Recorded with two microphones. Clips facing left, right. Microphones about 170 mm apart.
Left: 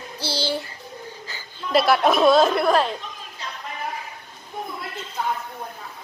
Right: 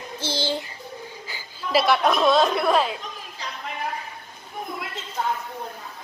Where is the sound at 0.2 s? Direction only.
10° left (ahead or behind).